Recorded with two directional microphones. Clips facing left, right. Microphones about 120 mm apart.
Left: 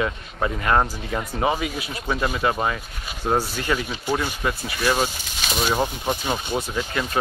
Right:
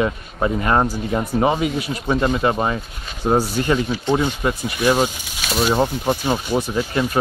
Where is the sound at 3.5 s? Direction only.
30° right (ahead or behind).